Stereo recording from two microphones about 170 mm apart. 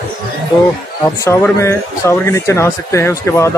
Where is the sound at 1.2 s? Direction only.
15° left (ahead or behind).